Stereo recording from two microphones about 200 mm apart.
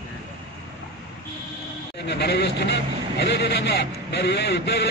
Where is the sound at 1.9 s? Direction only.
55° left (ahead or behind).